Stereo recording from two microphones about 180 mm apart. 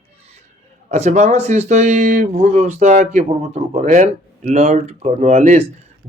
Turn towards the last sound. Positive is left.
turn(degrees=-40)  # may be behind; listen again after turning